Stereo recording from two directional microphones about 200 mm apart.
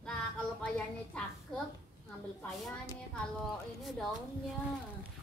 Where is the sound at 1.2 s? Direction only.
5° left (ahead or behind).